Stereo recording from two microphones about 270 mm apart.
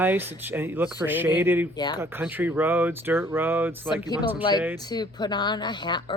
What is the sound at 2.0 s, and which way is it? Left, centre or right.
Speech, centre.